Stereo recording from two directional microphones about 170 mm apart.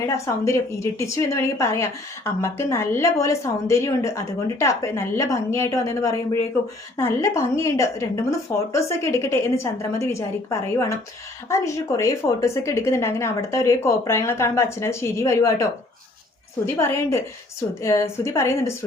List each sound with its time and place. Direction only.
0.0 s a woman's voice: 15° left (ahead or behind)
16.6 s a woman's voice: 15° left (ahead or behind)